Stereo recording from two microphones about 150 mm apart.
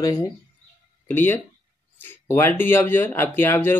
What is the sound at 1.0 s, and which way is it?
Speech, 15° left (ahead or behind).